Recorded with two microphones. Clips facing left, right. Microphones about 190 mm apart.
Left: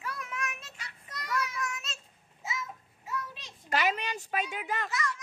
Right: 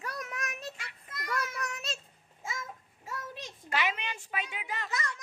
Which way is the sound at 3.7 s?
40° left (ahead or behind).